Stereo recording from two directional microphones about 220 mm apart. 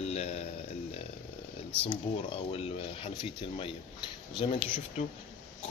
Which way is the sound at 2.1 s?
25° left (ahead or behind).